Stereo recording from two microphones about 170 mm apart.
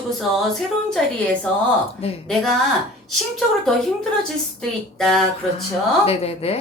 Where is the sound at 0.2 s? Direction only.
Centre (ahead or behind).